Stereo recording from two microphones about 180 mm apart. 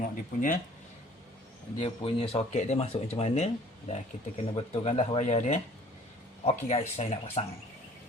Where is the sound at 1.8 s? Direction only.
30° left (ahead or behind).